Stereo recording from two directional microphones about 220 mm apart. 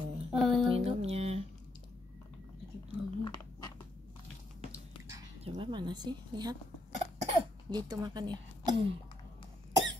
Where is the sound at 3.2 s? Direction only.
15° left (ahead or behind).